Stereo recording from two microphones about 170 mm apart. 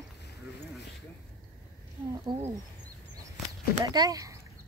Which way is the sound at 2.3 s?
25° right (ahead or behind).